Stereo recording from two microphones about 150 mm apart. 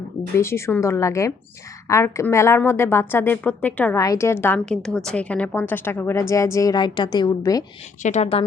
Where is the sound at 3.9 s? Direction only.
20° left (ahead or behind).